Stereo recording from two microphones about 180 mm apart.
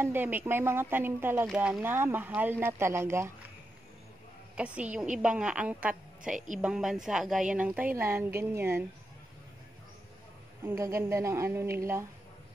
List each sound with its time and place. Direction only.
0.0 s a woman's voice: 10° right (ahead or behind)
4.6 s a woman's voice: 5° right (ahead or behind)
6.3 s a woman's voice: 45° right (ahead or behind)
6.6 s a woman's voice: 5° right (ahead or behind)
10.6 s a woman's voice: 15° right (ahead or behind)